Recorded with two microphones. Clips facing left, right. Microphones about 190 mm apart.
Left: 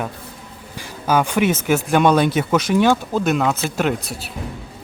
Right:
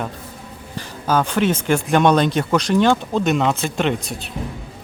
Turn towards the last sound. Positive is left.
turn(degrees=5)  # may be behind; listen again after turning